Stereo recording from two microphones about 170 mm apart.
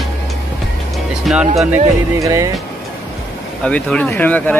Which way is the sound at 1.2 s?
5° right (ahead or behind).